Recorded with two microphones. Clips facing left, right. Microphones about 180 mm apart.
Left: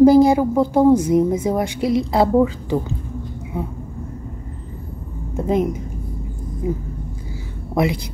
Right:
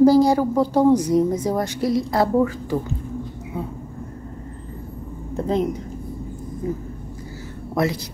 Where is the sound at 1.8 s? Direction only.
20° left (ahead or behind).